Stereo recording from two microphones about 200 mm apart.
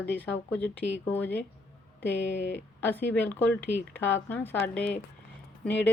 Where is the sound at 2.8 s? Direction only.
10° left (ahead or behind).